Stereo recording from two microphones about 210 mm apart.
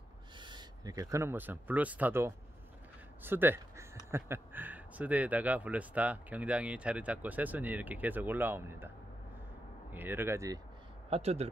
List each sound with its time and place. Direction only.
0.4 s speech: 20° right (ahead or behind)
9.9 s speech: 10° right (ahead or behind)
11.1 s speech: 30° right (ahead or behind)